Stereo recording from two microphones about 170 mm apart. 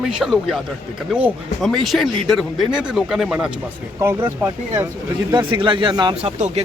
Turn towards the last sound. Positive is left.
turn(degrees=-45)  # may be behind; listen again after turning